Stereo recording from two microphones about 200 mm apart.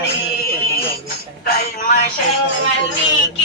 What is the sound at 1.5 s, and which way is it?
Music, 50° left (ahead or behind).